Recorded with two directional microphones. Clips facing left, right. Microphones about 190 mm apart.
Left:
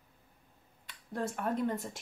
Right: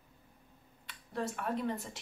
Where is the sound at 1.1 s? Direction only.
50° left (ahead or behind).